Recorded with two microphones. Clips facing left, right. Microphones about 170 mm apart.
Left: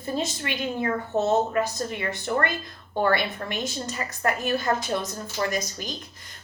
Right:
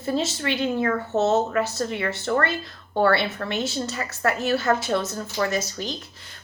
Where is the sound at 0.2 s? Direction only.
15° left (ahead or behind).